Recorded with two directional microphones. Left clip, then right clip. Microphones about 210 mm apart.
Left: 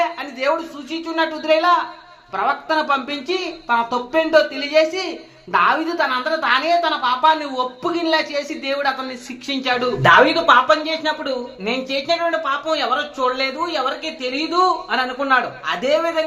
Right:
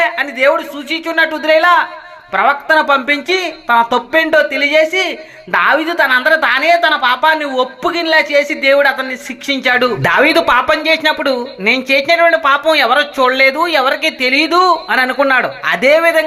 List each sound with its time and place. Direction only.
0.0 s speech: 20° right (ahead or behind)
9.5 s speech: 20° right (ahead or behind)